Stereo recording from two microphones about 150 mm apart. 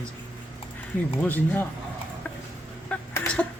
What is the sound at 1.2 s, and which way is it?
Speech, 10° left (ahead or behind).